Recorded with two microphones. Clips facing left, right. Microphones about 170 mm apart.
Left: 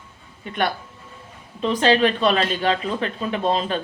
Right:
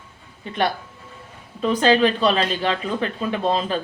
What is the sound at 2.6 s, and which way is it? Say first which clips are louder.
Speech: left 1 dB; 35° left (ahead or behind).